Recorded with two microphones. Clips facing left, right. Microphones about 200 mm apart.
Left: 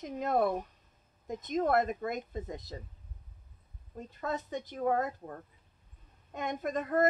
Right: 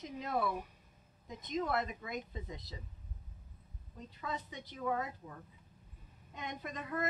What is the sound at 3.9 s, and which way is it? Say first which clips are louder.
Speech: left 6 dB; 45° left (ahead or behind).